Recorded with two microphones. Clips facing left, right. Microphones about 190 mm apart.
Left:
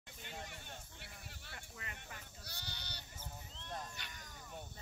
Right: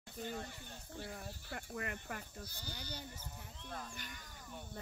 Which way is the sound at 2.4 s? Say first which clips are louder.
Right 4 dB; 70° left (ahead or behind).